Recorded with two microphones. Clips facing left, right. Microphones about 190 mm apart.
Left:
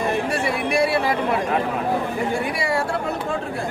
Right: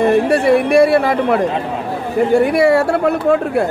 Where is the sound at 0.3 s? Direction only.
55° right (ahead or behind).